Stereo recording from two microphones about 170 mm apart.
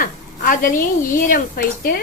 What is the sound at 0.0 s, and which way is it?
A woman's voice, 55° left (ahead or behind).